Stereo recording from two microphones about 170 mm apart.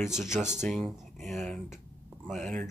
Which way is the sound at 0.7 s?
Centre (ahead or behind).